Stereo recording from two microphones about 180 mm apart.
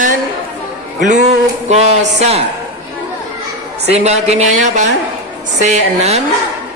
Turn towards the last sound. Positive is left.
turn(degrees=-35)  # may be behind; listen again after turning